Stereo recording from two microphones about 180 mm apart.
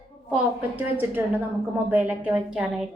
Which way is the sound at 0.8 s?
10° right (ahead or behind).